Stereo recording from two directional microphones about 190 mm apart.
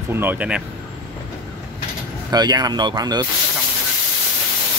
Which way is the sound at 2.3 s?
20° right (ahead or behind).